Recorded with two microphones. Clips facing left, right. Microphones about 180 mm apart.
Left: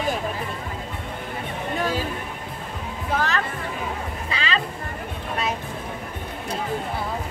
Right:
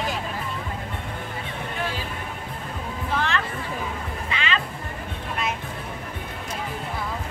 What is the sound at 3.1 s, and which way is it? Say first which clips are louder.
Music: left 2 dB; 40° left (ahead or behind).